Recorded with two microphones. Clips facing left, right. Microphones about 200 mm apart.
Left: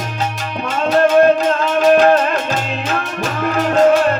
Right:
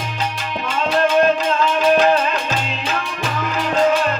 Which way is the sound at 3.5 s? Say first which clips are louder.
Left 5 dB; 50° left (ahead or behind).